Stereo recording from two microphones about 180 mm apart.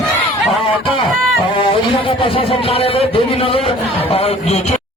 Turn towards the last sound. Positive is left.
turn(degrees=35)  # may be behind; listen again after turning